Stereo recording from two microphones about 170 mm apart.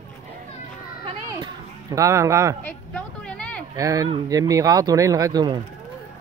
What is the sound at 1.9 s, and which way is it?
Speech, 20° right (ahead or behind).